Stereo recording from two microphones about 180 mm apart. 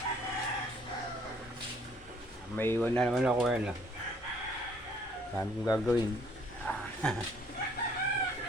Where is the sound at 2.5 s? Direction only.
10° left (ahead or behind); by 3.7 s 5° right (ahead or behind).